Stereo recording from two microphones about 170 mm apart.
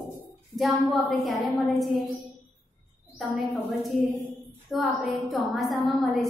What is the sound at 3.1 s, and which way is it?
A woman's voice, centre (ahead or behind).